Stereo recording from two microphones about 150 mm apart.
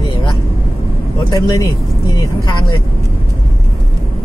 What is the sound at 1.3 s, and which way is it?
Speech, 25° left (ahead or behind).